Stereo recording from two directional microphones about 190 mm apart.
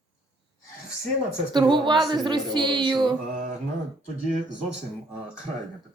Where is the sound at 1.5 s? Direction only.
25° right (ahead or behind).